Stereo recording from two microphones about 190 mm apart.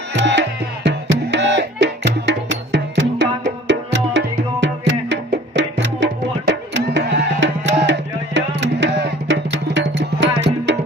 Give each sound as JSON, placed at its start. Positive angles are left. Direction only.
{"t": 0.1, "sound": "music", "side_deg": -70}